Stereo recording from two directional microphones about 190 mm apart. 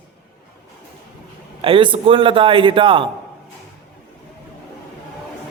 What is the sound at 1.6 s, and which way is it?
A man's voice, 25° right (ahead or behind).